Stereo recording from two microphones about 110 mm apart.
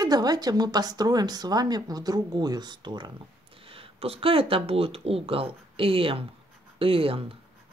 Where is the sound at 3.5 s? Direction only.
55° right (ahead or behind).